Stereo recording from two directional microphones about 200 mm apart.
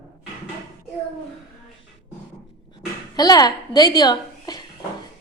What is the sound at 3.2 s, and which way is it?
A woman's voice, 20° left (ahead or behind).